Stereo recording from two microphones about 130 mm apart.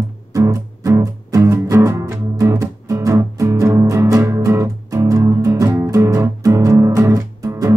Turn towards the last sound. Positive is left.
turn(degrees=-25)  # may be behind; listen again after turning